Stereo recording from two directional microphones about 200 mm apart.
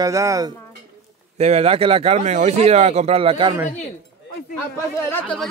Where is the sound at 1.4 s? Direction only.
30° right (ahead or behind).